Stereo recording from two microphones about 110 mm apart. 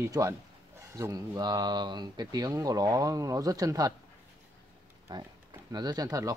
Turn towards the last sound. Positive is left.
turn(degrees=-35)  # may be behind; listen again after turning